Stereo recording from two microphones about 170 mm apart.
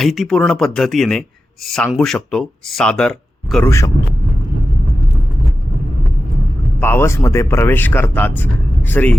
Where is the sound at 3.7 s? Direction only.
15° left (ahead or behind).